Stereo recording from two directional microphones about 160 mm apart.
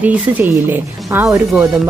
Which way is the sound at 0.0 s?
10° right (ahead or behind).